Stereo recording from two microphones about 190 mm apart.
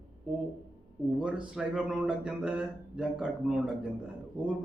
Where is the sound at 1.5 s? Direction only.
5° right (ahead or behind).